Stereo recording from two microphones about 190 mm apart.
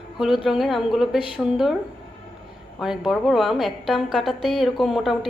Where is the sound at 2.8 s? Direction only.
Centre (ahead or behind).